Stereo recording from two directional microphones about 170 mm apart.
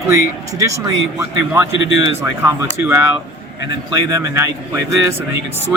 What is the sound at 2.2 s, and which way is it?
Speech, 15° right (ahead or behind).